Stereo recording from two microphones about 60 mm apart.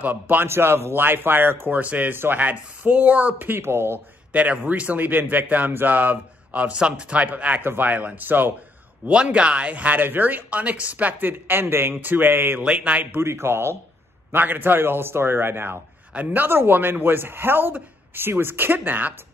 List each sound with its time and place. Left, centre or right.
0.0 s a man's voice: right
0.5 s speech: right
4.3 s a man's voice: right
9.0 s a man's voice: centre; by 12.5 s right
12.6 s a man's voice: centre
13.2 s speech: right
14.3 s speech: right